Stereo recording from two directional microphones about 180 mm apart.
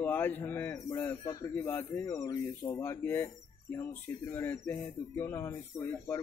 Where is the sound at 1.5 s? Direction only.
10° left (ahead or behind).